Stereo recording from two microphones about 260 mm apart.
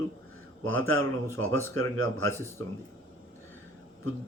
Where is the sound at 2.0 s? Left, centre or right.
Right.